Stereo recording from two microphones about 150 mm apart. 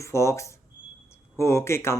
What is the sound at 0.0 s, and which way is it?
Speech, 20° left (ahead or behind).